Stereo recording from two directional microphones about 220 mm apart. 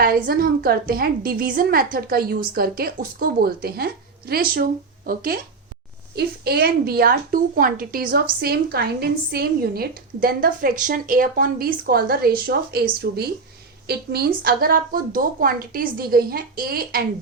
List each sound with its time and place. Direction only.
0.0 s a woman's voice: 40° right (ahead or behind)